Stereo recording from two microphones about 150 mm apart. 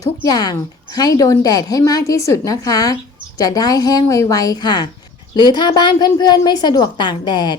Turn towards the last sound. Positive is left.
turn(degrees=30)  # may be behind; listen again after turning